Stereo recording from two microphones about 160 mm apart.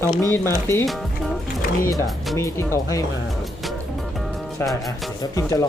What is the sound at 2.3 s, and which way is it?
Speech, 15° left (ahead or behind).